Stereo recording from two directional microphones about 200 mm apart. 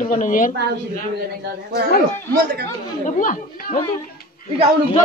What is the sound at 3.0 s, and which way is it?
Speech, 40° left (ahead or behind).